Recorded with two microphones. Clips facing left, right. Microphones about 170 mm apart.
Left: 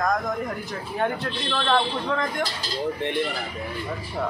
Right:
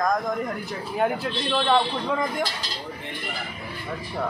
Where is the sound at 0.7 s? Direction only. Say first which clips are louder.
Right 3 dB; 5° right (ahead or behind).